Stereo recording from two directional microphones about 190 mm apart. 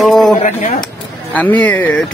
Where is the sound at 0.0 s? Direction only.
Centre (ahead or behind).